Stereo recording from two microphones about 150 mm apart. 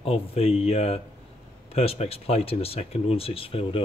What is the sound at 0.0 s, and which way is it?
Speech, 40° left (ahead or behind).